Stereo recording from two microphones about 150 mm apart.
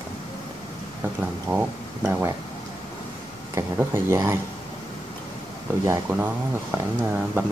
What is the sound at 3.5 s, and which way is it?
Speech, 15° right (ahead or behind).